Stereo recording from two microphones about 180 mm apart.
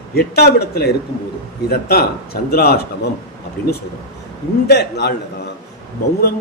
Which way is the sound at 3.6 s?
5° left (ahead or behind).